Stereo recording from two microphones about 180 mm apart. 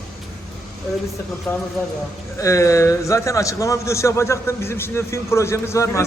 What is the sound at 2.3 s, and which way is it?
A man's voice, 15° left (ahead or behind).